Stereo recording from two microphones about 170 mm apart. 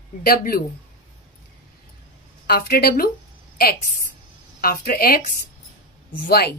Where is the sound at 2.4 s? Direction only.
65° left (ahead or behind).